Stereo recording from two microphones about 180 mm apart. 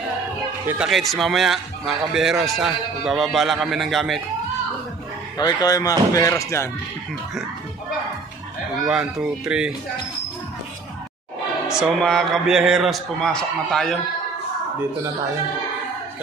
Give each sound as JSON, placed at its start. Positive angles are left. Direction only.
{"t": 0.7, "sound": "speech", "side_deg": -5}
{"t": 5.4, "sound": "speech", "side_deg": 20}
{"t": 8.8, "sound": "speech", "side_deg": -5}
{"t": 12.0, "sound": "speech", "side_deg": 5}